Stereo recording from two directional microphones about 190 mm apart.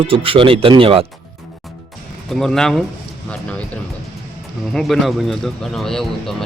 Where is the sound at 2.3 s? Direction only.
Centre (ahead or behind).